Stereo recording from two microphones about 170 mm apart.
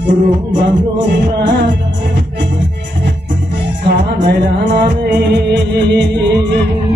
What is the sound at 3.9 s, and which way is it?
Music, 85° right.